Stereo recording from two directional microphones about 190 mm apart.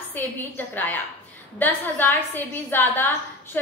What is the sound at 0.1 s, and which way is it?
A woman's voice, 10° left (ahead or behind).